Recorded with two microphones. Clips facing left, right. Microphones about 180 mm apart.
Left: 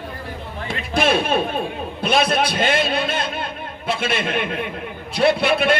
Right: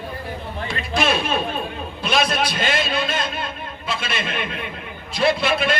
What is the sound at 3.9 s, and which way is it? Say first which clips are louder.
A man's voice: left 5 dB; 55° left (ahead or behind).